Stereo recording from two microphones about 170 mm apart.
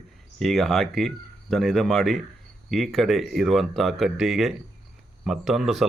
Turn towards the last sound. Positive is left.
turn(degrees=0)  # may be behind; listen again after turning